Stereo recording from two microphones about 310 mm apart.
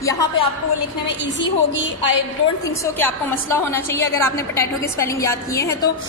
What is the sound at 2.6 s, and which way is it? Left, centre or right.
A woman's voice, centre.